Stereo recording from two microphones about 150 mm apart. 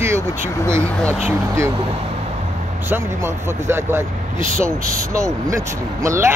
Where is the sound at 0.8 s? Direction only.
10° left (ahead or behind).